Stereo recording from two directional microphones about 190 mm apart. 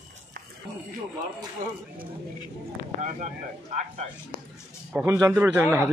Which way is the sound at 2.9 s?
40° right (ahead or behind).